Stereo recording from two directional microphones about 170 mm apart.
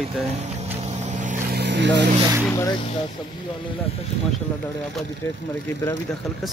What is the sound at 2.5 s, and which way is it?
Speech, 20° left (ahead or behind).